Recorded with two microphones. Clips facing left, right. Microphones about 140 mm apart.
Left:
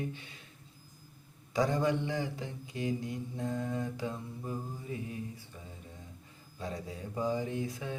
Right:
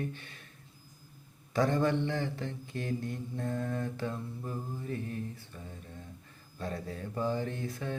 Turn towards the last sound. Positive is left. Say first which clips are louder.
# even
turn(degrees=15)  # may be behind; listen again after turning